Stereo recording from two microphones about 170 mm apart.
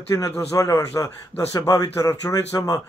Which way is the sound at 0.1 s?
20° left (ahead or behind).